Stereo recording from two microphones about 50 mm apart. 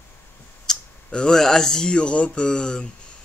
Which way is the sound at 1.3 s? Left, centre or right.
Centre.